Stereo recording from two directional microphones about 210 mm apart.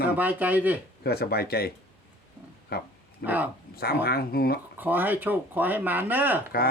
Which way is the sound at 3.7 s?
45° left (ahead or behind).